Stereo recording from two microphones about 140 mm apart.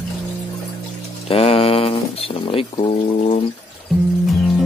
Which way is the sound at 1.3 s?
45° left (ahead or behind).